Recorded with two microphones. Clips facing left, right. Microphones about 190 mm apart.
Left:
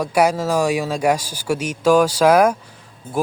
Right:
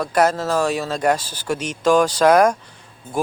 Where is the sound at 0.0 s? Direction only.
10° left (ahead or behind).